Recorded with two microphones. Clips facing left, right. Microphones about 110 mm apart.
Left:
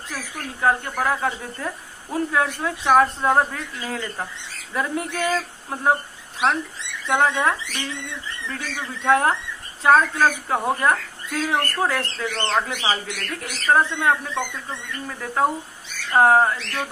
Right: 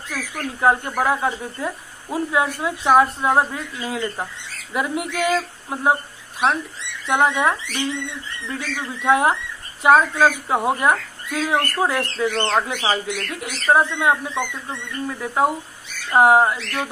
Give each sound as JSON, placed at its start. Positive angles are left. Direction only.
{"t": 0.6, "sound": "speech", "side_deg": -20}
{"t": 7.1, "sound": "speech", "side_deg": -15}